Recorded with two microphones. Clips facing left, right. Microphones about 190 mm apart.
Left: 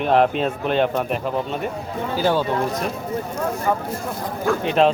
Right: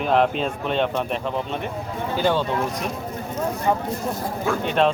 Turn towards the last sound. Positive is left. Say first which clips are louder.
# left 3 dB
turn(degrees=0)  # may be behind; listen again after turning